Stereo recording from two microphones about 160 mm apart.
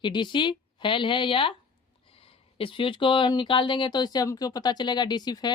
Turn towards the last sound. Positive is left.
turn(degrees=25)  # may be behind; listen again after turning